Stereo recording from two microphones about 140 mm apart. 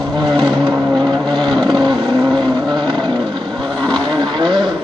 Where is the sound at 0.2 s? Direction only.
30° right (ahead or behind).